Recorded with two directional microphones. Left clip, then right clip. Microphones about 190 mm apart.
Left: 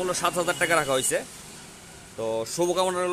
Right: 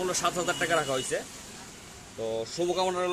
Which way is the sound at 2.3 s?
25° left (ahead or behind).